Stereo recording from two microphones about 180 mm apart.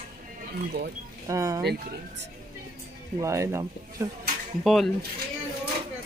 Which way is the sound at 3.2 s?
15° right (ahead or behind).